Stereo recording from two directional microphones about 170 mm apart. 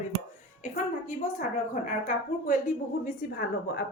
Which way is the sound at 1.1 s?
50° left (ahead or behind).